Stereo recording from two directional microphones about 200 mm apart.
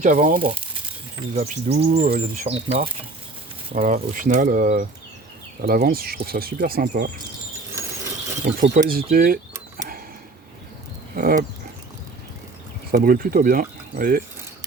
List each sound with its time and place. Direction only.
0.0 s speech: 40° right (ahead or behind)
1.4 s speech: 30° right (ahead or behind)
8.4 s speech: 40° right (ahead or behind)
11.2 s speech: 45° right (ahead or behind)
12.9 s speech: 45° right (ahead or behind)